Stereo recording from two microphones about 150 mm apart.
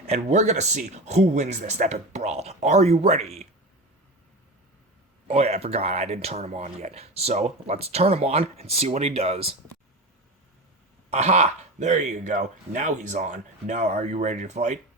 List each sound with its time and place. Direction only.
0.0 s speech: 50° right (ahead or behind)
5.3 s speech: 45° right (ahead or behind)
11.1 s speech: 50° right (ahead or behind)